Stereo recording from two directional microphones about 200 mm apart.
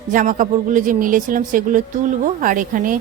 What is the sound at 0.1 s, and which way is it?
Speech, 40° right (ahead or behind).